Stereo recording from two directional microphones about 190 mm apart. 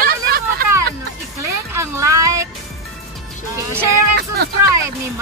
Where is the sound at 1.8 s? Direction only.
15° right (ahead or behind).